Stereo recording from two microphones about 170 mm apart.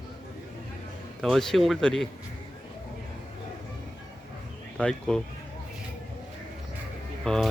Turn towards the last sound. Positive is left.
turn(degrees=5)  # may be behind; listen again after turning